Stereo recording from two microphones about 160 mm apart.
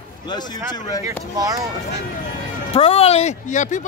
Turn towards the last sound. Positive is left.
turn(degrees=50)  # may be behind; listen again after turning